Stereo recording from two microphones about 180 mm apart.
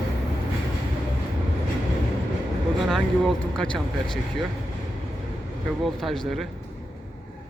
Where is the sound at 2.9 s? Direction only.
Centre (ahead or behind).